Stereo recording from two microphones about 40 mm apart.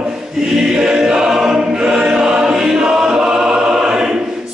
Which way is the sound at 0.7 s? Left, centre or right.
Centre.